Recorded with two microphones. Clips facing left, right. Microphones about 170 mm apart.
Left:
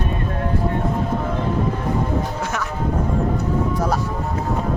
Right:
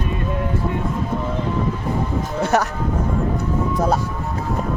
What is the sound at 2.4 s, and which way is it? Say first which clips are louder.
Music: right 7 dB; 40° right (ahead or behind).